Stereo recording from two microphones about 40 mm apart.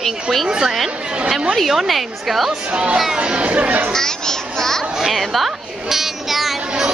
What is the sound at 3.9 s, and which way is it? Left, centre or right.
Children playing, centre.